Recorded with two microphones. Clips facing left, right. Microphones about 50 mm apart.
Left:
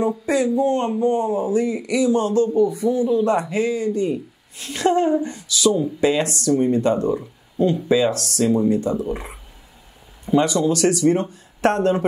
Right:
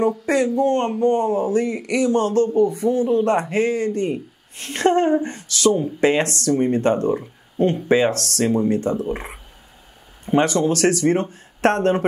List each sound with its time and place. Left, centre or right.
0.2 s a man's voice: right